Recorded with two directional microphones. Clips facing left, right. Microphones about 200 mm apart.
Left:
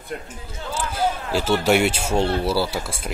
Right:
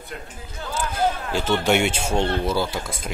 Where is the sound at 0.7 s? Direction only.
10° left (ahead or behind).